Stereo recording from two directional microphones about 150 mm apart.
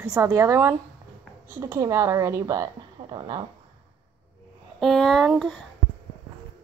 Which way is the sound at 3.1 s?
30° right (ahead or behind).